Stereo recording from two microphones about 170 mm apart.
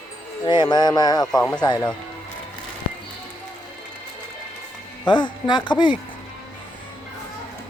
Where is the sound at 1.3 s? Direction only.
5° left (ahead or behind).